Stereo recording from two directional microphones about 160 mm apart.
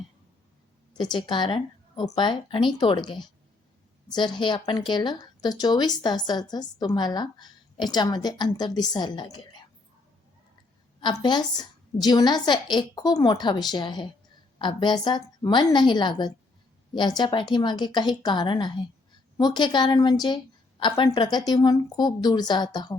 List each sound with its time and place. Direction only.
0.9 s a woman's voice: 30° left (ahead or behind)
4.4 s a woman's voice: 30° left (ahead or behind)
11.0 s a woman's voice: 30° left (ahead or behind)